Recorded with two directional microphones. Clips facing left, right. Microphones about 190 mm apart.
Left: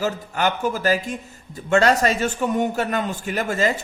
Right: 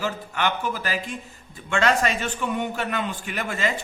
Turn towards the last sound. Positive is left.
turn(degrees=40)  # may be behind; listen again after turning